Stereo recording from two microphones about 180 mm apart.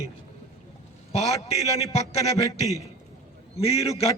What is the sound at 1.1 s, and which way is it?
A man's voice, 35° left (ahead or behind).